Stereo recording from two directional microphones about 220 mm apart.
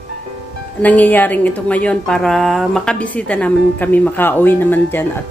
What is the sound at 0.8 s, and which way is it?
A woman's voice, 5° left (ahead or behind).